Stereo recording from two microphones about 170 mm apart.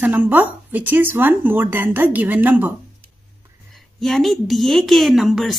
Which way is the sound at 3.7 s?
Centre (ahead or behind).